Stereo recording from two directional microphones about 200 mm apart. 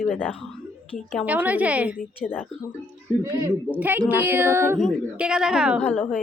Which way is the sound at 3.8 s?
10° right (ahead or behind).